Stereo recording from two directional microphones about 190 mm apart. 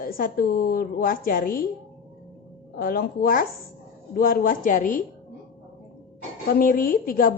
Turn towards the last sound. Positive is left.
turn(degrees=45)  # may be behind; listen again after turning